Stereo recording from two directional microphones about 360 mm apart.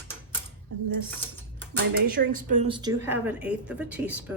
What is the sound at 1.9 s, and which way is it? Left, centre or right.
Speech, right.